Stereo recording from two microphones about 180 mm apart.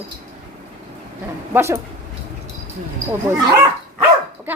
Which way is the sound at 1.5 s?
15° right (ahead or behind).